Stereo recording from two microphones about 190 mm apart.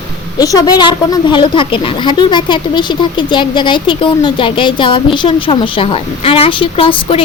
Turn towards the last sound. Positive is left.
turn(degrees=30)  # may be behind; listen again after turning